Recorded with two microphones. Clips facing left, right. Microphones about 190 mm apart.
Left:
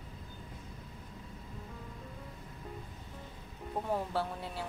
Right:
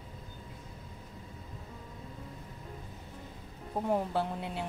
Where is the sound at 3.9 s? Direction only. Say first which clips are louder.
Right 3 dB; 20° right (ahead or behind).